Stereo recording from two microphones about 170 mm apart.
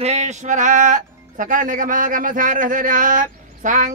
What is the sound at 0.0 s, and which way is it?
Speech, 40° right (ahead or behind).